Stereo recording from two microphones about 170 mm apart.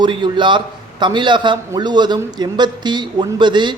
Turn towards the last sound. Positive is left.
turn(degrees=-25)  # may be behind; listen again after turning